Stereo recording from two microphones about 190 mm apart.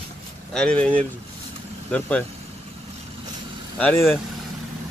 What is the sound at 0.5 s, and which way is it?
Speech, 5° left (ahead or behind).